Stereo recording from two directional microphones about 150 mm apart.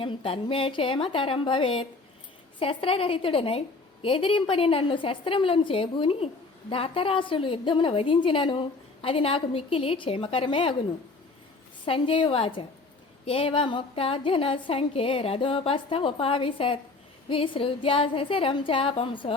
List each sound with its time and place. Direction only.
0.0 s a woman's voice: 35° left (ahead or behind)
11.9 s a woman's voice: 35° left (ahead or behind)